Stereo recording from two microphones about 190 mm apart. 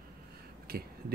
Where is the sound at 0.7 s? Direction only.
50° right (ahead or behind).